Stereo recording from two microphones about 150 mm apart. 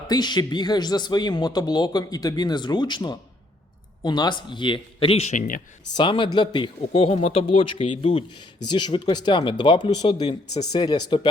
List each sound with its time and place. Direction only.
0.1 s speech: 30° left (ahead or behind); by 5.5 s 55° left (ahead or behind)
6.0 s speech: 35° left (ahead or behind)